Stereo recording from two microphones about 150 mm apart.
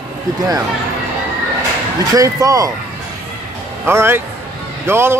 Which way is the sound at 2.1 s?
25° right (ahead or behind).